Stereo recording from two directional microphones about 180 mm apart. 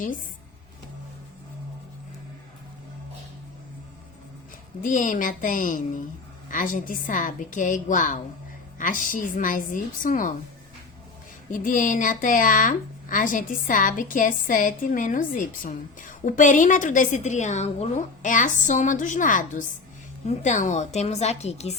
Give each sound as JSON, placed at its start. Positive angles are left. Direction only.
{"t": 4.8, "sound": "a woman's voice", "side_deg": 45}
{"t": 11.5, "sound": "a woman's voice", "side_deg": 45}